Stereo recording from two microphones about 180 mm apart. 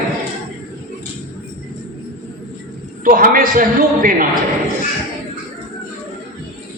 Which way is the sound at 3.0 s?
50° right (ahead or behind).